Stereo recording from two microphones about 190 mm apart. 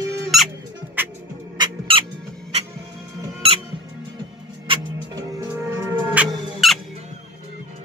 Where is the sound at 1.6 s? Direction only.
25° right (ahead or behind).